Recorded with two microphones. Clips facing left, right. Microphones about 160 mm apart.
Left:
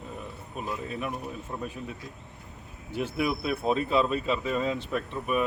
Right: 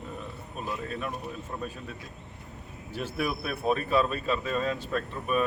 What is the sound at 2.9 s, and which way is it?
Speech, 20° left (ahead or behind).